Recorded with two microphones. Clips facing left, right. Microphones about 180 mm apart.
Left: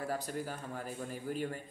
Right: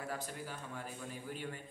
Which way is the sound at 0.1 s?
40° left (ahead or behind).